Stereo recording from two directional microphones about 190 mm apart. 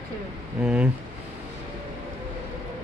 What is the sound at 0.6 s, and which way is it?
Speech, 5° right (ahead or behind).